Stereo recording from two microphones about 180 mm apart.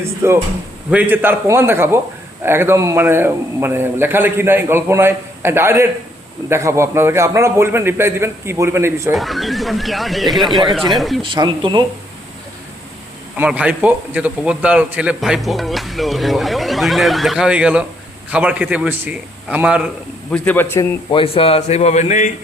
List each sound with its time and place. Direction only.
0.0 s a man's voice: 15° right (ahead or behind)
9.1 s a man's voice: centre (ahead or behind)
11.2 s speech: 25° right (ahead or behind)
13.3 s a man's voice: 10° right (ahead or behind)
20.3 s a man's voice: 10° left (ahead or behind)
21.1 s a man's voice: 30° left (ahead or behind)